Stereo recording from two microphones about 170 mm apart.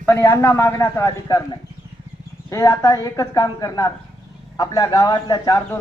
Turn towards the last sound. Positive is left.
turn(degrees=20)  # may be behind; listen again after turning